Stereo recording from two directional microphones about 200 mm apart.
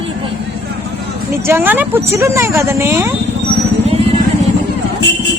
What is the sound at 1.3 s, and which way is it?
Speech, 10° right (ahead or behind).